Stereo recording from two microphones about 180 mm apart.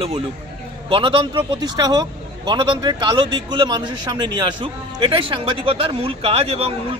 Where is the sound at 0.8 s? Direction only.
30° right (ahead or behind).